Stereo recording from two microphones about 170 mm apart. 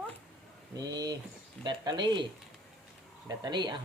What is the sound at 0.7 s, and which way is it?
Speech, 25° right (ahead or behind).